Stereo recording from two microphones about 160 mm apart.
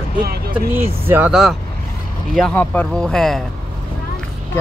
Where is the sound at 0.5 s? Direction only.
15° right (ahead or behind); by 3.4 s centre (ahead or behind).